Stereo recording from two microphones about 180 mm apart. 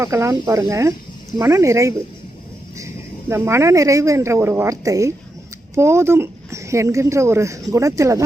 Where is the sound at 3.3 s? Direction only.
15° right (ahead or behind).